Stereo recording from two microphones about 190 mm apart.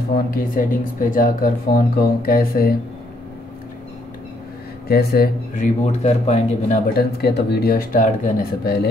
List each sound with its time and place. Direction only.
0.1 s speech: 50° left (ahead or behind)
4.8 s speech: 55° left (ahead or behind)
5.6 s speech: 35° left (ahead or behind)
7.0 s speech: 60° left (ahead or behind)